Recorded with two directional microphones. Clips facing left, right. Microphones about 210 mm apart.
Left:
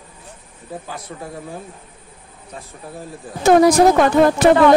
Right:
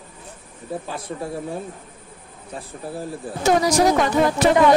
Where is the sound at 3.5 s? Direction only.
55° left (ahead or behind).